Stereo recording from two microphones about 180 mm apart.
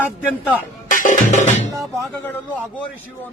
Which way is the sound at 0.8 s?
45° left (ahead or behind).